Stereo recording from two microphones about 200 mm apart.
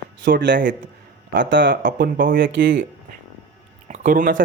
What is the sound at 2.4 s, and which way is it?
Speech, 65° right (ahead or behind).